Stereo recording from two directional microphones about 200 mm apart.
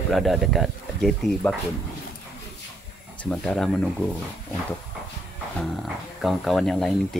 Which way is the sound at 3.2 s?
5° left (ahead or behind).